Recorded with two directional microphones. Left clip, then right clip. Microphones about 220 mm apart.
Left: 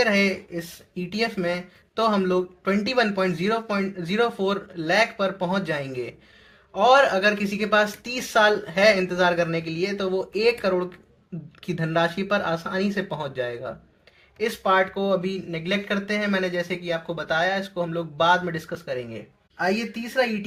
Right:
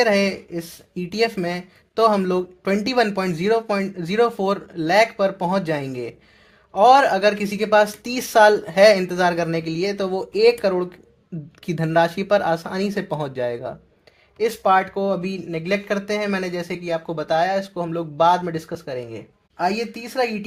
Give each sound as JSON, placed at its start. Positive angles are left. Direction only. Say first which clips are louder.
{"t": 0.0, "sound": "speech", "louder": "right 3 dB", "side_deg": -55}